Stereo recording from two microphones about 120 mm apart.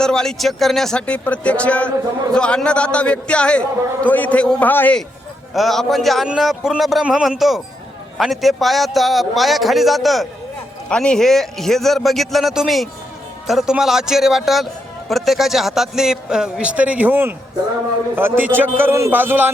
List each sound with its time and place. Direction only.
0.0 s a man's voice: 5° left (ahead or behind)
5.5 s a man's voice: centre (ahead or behind); by 19.5 s 15° right (ahead or behind)